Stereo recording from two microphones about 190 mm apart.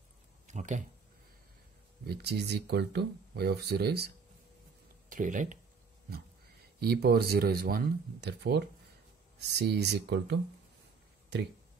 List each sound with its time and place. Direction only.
0.5 s speech: 40° right (ahead or behind)
2.0 s speech: 60° right (ahead or behind)
5.1 s speech: 40° right (ahead or behind)
6.8 s speech: 55° right (ahead or behind)